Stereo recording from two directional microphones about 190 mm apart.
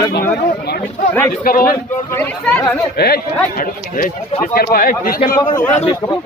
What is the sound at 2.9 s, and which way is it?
A man's voice, 55° left (ahead or behind).